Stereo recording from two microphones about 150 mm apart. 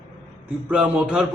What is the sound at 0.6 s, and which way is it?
Speech, 10° right (ahead or behind).